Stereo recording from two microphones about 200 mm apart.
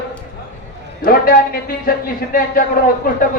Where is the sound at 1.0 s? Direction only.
50° left (ahead or behind).